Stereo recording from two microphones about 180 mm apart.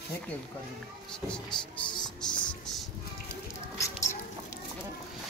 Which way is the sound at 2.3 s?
25° left (ahead or behind).